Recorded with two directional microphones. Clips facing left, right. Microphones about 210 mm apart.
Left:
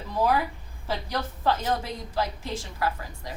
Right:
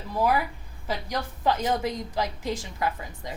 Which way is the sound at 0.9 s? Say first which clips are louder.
Even; 15° right (ahead or behind).